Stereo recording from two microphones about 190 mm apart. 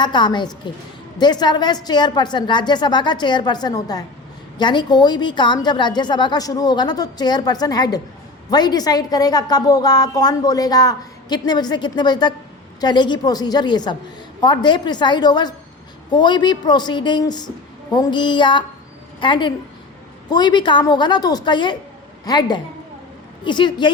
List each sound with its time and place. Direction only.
0.0 s a woman's voice: 25° left (ahead or behind)